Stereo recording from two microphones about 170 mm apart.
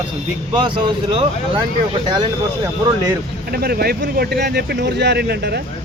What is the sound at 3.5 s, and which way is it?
Speech, 65° right (ahead or behind).